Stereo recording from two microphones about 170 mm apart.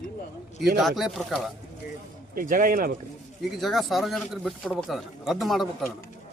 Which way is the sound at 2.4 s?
55° right (ahead or behind).